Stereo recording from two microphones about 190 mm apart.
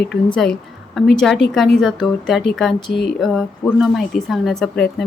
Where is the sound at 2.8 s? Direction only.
60° left (ahead or behind).